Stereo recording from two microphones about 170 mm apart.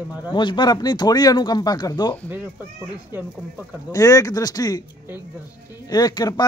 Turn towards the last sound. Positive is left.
turn(degrees=25)  # may be behind; listen again after turning